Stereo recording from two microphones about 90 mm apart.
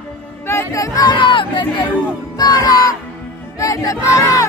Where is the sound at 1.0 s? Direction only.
65° left (ahead or behind).